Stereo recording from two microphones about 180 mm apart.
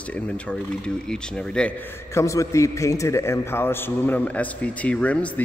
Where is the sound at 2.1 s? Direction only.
15° left (ahead or behind).